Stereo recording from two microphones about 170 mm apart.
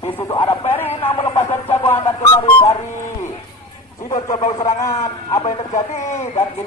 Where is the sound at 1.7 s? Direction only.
35° left (ahead or behind).